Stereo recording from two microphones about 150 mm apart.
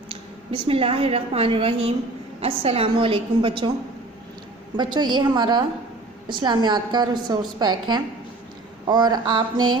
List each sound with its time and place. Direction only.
0.1 s a woman's voice: 40° right (ahead or behind)
4.8 s a woman's voice: 30° right (ahead or behind)